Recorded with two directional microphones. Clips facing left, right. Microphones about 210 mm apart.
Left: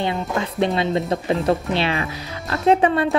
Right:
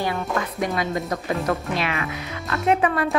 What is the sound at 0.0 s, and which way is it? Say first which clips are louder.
Speech: left 2 dB; 20° left (ahead or behind).